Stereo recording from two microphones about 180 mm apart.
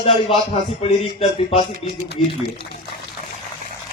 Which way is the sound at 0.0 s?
30° left (ahead or behind).